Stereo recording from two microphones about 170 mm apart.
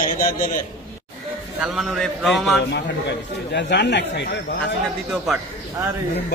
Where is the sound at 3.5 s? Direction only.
90° left.